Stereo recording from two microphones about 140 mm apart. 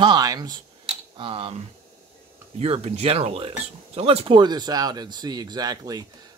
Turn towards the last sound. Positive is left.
turn(degrees=-30)  # may be behind; listen again after turning